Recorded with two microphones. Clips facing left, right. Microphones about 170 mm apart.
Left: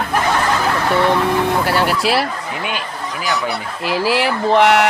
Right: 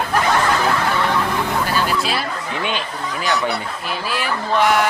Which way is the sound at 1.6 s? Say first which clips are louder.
Left 4 dB; 70° left (ahead or behind).